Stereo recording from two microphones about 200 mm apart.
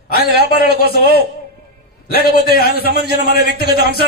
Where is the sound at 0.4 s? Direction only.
50° left (ahead or behind).